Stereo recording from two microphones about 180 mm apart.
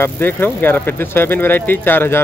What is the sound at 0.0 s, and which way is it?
Speech, 10° left (ahead or behind).